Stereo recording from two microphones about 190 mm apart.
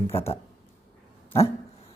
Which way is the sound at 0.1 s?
30° left (ahead or behind).